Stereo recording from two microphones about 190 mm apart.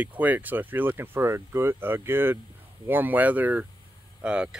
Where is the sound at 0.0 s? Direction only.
10° right (ahead or behind).